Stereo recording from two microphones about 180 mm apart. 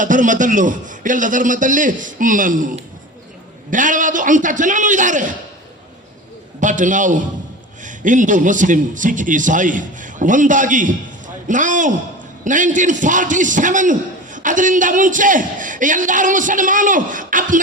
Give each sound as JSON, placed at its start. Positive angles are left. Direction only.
{"t": 0.0, "sound": "a man's voice", "side_deg": -45}
{"t": 6.6, "sound": "a man's voice", "side_deg": -45}